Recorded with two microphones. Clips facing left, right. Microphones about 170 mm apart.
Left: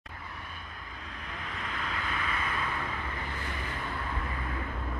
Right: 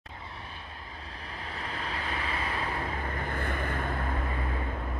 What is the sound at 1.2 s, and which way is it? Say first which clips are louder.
Vehicle: right 1 dB; 35° right (ahead or behind).